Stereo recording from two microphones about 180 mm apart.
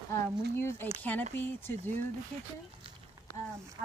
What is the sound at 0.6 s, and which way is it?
Speech, 15° left (ahead or behind).